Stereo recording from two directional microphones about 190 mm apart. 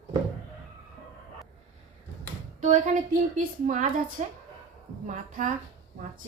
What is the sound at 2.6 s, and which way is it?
A woman's voice, 40° right (ahead or behind).